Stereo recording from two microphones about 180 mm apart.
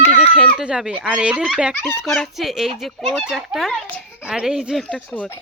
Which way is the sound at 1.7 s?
10° left (ahead or behind).